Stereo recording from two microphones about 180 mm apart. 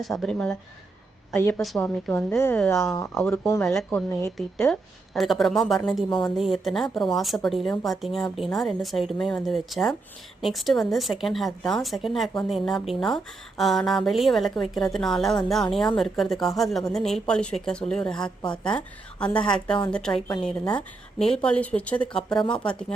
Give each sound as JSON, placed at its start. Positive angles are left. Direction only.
{"t": 0.2, "sound": "speech", "side_deg": 5}
{"t": 3.2, "sound": "speech", "side_deg": 5}
{"t": 22.3, "sound": "speech", "side_deg": 25}
{"t": 22.6, "sound": "speech", "side_deg": 5}